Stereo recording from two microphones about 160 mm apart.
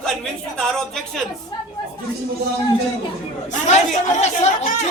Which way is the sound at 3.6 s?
45° left (ahead or behind).